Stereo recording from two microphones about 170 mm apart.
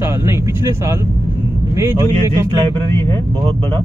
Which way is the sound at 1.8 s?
15° right (ahead or behind).